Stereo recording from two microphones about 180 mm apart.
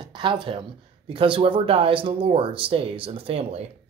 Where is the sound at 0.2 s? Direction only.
25° right (ahead or behind).